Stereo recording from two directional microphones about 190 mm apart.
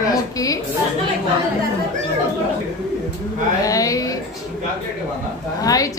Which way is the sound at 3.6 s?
20° left (ahead or behind).